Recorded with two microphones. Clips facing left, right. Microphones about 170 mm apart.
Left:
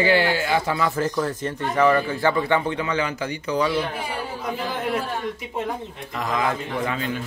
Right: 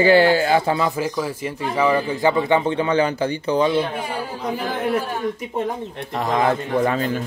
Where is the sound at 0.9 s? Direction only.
10° right (ahead or behind); by 3.9 s 25° right (ahead or behind).